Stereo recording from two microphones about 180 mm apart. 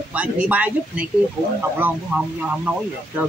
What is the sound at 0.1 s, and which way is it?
Speech, 10° right (ahead or behind).